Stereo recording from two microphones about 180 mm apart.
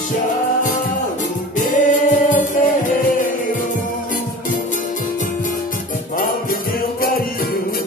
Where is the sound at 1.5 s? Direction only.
45° left (ahead or behind).